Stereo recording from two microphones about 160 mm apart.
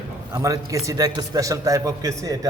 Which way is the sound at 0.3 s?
20° right (ahead or behind).